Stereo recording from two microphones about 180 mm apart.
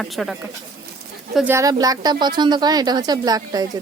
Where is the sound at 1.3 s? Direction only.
10° right (ahead or behind).